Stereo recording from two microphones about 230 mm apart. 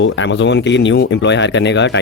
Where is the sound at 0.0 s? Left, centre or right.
Left.